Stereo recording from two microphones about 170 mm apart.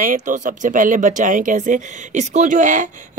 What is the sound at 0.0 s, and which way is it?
Speech, 50° right (ahead or behind).